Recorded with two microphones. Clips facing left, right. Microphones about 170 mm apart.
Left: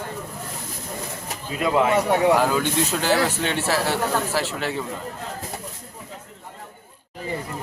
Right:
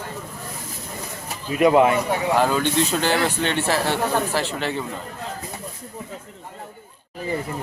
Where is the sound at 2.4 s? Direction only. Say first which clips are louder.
Right 1 dB; 5° left (ahead or behind).